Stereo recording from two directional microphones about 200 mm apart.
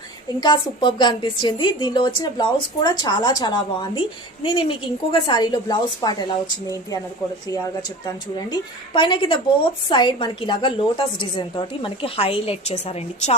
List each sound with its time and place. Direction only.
0.3 s a woman's voice: 20° left (ahead or behind)